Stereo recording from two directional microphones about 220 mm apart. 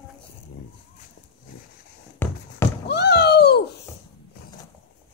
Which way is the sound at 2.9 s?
50° left (ahead or behind).